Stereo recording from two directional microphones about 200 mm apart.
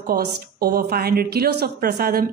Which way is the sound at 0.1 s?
50° right (ahead or behind).